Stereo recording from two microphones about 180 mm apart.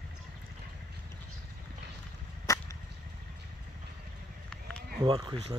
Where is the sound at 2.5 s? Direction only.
15° left (ahead or behind).